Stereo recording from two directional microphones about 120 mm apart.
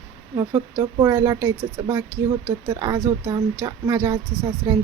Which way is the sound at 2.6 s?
30° right (ahead or behind).